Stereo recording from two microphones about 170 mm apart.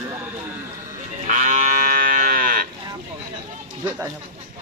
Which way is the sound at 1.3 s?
50° right (ahead or behind).